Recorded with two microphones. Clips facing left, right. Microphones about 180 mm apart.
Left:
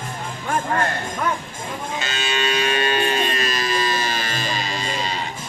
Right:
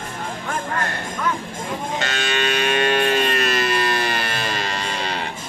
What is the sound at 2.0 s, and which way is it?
Cattle, 65° right (ahead or behind).